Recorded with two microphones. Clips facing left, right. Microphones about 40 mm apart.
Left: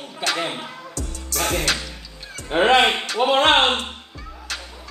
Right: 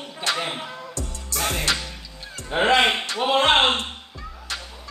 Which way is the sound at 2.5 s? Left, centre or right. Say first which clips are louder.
Left 3 dB; centre.